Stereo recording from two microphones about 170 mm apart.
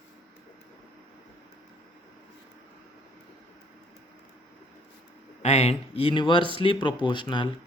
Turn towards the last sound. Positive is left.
turn(degrees=30)  # may be behind; listen again after turning